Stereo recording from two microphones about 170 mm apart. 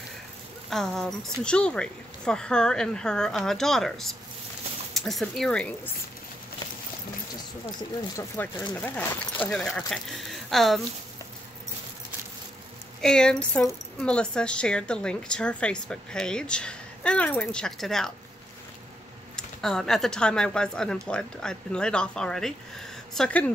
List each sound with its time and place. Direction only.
0.7 s a woman's voice: centre (ahead or behind)
8.2 s a woman's voice: 10° left (ahead or behind)
13.0 s a woman's voice: 5° left (ahead or behind)
19.3 s a woman's voice: 5° left (ahead or behind)